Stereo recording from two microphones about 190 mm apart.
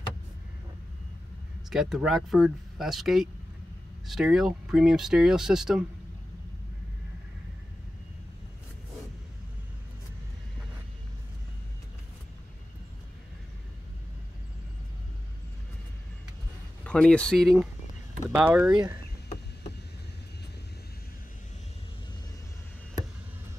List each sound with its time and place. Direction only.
1.7 s speech: 5° right (ahead or behind)
16.8 s speech: 5° left (ahead or behind)
18.3 s speech: 10° right (ahead or behind)